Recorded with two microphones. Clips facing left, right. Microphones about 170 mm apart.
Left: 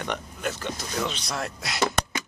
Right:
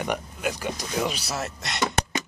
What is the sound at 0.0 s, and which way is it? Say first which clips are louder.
Speech: right 2 dB; 10° right (ahead or behind).